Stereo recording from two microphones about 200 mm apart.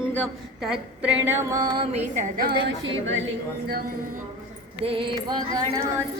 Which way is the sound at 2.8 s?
70° right (ahead or behind).